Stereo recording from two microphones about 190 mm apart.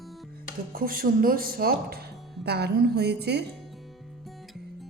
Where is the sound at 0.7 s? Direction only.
50° right (ahead or behind).